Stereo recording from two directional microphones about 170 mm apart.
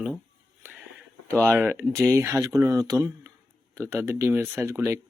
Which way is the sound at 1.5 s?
5° right (ahead or behind).